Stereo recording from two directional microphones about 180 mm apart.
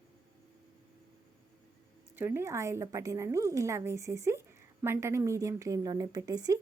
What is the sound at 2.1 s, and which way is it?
A woman's voice, 15° right (ahead or behind).